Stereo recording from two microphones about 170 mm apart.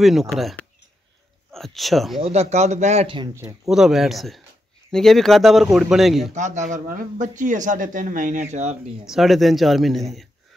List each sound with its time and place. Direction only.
0.0 s speech: centre (ahead or behind)
2.2 s a man's voice: 35° right (ahead or behind)
3.3 s speech: 5° right (ahead or behind)
6.3 s a man's voice: 45° right (ahead or behind)
9.0 s speech: centre (ahead or behind)